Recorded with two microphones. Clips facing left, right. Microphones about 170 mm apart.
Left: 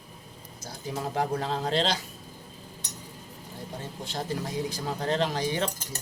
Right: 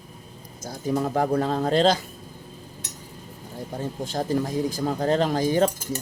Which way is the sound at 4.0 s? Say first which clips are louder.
Right 7 dB; 45° right (ahead or behind).